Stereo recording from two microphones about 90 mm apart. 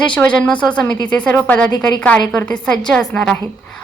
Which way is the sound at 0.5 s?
55° left (ahead or behind).